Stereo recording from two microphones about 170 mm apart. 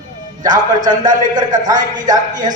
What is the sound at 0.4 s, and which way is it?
A man's voice, 25° right (ahead or behind).